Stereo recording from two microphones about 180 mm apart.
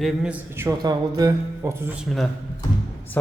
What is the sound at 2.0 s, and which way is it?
Speech, centre (ahead or behind).